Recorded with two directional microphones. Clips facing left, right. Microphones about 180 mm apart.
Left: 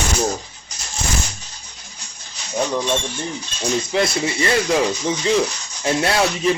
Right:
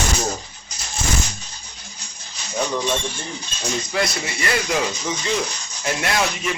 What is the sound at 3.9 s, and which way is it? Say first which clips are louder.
Speech: left 4 dB; 25° left (ahead or behind).